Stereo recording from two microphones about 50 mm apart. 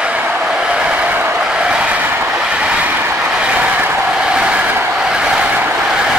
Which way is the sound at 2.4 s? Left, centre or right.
Right.